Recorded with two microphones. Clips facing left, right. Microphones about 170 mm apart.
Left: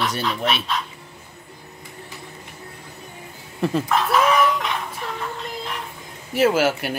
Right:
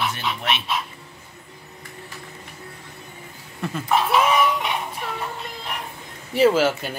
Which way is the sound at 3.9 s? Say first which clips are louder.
Right 2 dB; 5° right (ahead or behind).